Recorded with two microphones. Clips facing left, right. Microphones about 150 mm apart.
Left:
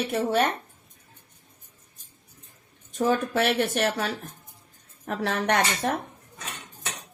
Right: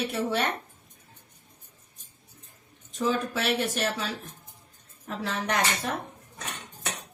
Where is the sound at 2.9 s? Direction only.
55° left (ahead or behind).